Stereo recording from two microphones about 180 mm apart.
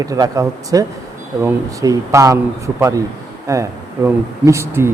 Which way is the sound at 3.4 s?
15° right (ahead or behind).